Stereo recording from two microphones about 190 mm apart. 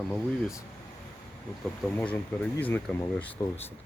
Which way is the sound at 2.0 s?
10° left (ahead or behind).